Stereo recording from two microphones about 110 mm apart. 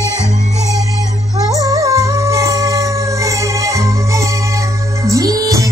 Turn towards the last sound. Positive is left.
turn(degrees=-30)  # may be behind; listen again after turning